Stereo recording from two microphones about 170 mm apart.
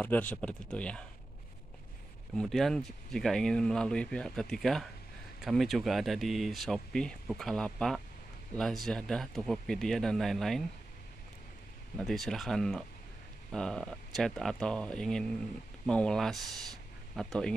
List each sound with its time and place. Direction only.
0.0 s speech: 10° left (ahead or behind)
2.3 s speech: centre (ahead or behind)
12.0 s speech: centre (ahead or behind)